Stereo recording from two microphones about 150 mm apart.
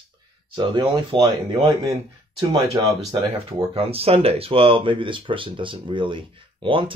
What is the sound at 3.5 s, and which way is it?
Speech, 40° right (ahead or behind).